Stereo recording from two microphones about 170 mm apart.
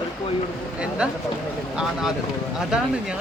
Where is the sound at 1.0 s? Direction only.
5° right (ahead or behind).